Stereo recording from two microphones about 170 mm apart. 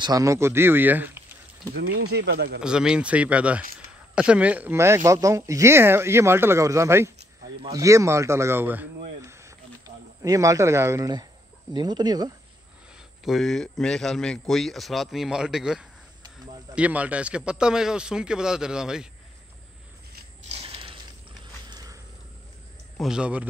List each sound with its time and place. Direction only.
0.0 s speech: 20° right (ahead or behind)
1.8 s speech: 70° right (ahead or behind)
2.6 s speech: 5° right (ahead or behind)
9.2 s snake: 15° right (ahead or behind)
11.7 s speech: 25° right (ahead or behind)
13.2 s a man's voice: centre (ahead or behind)
20.4 s mechanisms: 35° right (ahead or behind)
21.6 s a sound: 25° right (ahead or behind)
22.9 s a man's voice: 5° right (ahead or behind)